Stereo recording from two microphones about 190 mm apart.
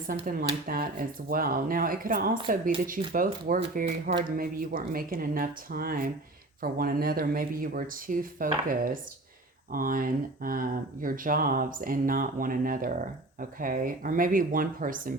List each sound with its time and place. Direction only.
0.1 s speech: 50° right (ahead or behind)